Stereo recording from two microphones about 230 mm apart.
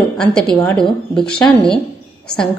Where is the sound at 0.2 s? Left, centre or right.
Centre.